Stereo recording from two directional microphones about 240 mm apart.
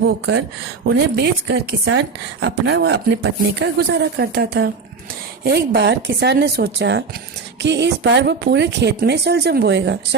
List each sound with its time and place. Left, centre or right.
0.9 s speech: right